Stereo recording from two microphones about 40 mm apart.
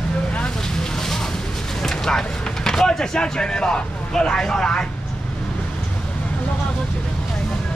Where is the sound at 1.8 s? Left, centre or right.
Centre.